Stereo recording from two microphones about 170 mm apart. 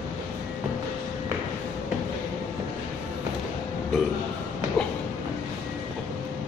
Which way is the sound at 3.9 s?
Centre (ahead or behind).